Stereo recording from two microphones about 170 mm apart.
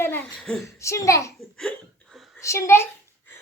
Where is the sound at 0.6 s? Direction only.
15° left (ahead or behind).